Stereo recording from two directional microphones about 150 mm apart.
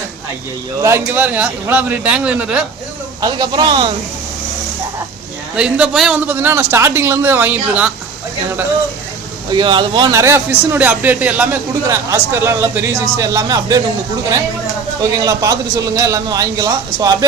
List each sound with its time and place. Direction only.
0.8 s a man's voice: 20° right (ahead or behind)
3.2 s a man's voice: 25° right (ahead or behind)
5.5 s a man's voice: 5° right (ahead or behind)
9.5 s speech: 30° right (ahead or behind)
10.1 s a man's voice: 20° right (ahead or behind)
15.1 s a man's voice: 25° right (ahead or behind)